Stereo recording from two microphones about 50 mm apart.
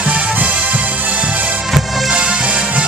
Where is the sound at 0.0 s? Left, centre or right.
Right.